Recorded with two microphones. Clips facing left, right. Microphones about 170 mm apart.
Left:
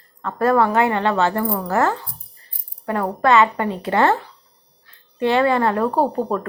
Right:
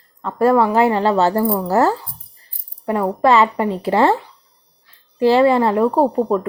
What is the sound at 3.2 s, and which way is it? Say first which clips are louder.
Speech: right 1 dB; 30° right (ahead or behind).